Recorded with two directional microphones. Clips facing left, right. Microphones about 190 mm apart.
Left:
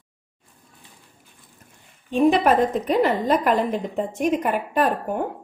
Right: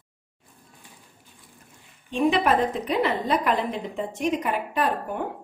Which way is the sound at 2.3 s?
45° left (ahead or behind).